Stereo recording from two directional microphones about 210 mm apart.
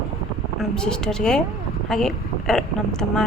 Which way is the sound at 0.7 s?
5° left (ahead or behind).